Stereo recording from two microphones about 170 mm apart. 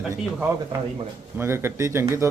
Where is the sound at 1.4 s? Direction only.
15° right (ahead or behind).